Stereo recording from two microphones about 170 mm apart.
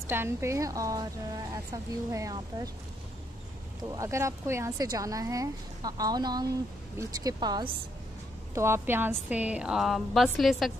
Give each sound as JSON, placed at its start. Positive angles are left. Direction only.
{"t": 0.0, "sound": "a woman's voice", "side_deg": -15}
{"t": 3.9, "sound": "a woman's voice", "side_deg": -20}